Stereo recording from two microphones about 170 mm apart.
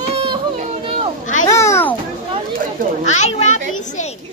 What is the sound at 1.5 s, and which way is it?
Speech, 15° left (ahead or behind).